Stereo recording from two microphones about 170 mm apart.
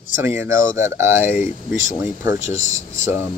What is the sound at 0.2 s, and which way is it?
Speech, 15° right (ahead or behind).